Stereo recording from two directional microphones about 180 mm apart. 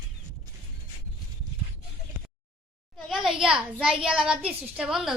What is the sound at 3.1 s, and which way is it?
A child's voice, 5° right (ahead or behind).